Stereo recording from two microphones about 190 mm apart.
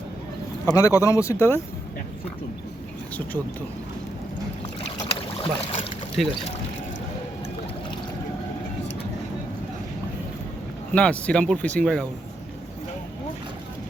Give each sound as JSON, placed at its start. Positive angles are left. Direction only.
{"t": 0.7, "sound": "speech", "side_deg": 15}
{"t": 4.9, "sound": "boat", "side_deg": 30}
{"t": 6.2, "sound": "speech", "side_deg": 0}
{"t": 10.9, "sound": "speech", "side_deg": 5}